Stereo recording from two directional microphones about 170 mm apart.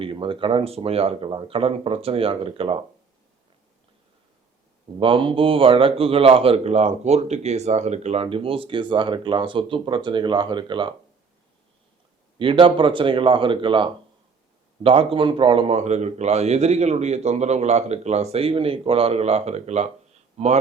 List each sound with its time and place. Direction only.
0.0 s a man's voice: 30° right (ahead or behind)
4.9 s a man's voice: 30° right (ahead or behind)
12.4 s a man's voice: 30° right (ahead or behind)